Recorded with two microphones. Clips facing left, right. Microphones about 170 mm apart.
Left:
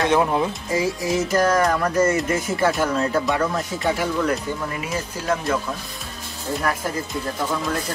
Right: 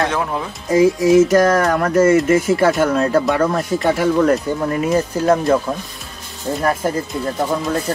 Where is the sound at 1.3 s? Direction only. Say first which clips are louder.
Right 5 dB; 55° right (ahead or behind).